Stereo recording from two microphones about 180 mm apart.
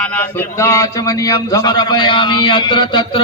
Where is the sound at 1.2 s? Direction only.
20° left (ahead or behind).